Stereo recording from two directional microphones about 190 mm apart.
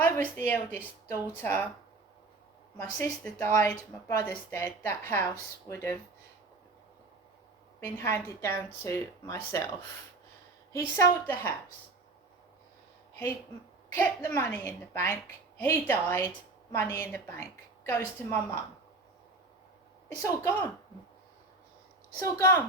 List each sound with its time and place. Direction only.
0.0 s a woman's voice: 10° left (ahead or behind)
2.7 s a woman's voice: 15° left (ahead or behind)
7.8 s a woman's voice: 15° left (ahead or behind)
10.7 s a woman's voice: 15° left (ahead or behind)
13.9 s a woman's voice: 10° left (ahead or behind)
20.2 s a woman's voice: 15° left (ahead or behind)
22.2 s a woman's voice: 15° left (ahead or behind)